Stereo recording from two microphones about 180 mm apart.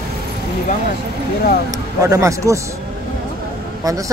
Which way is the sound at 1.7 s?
20° right (ahead or behind).